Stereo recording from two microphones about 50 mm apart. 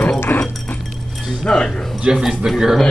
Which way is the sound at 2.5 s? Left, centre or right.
Centre.